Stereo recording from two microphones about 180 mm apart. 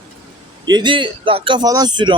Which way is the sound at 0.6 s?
25° right (ahead or behind).